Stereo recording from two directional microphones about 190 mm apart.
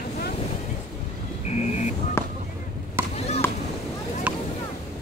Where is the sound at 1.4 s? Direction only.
35° left (ahead or behind).